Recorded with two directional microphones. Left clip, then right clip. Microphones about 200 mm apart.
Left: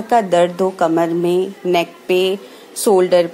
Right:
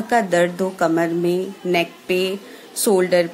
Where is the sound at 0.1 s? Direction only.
15° left (ahead or behind).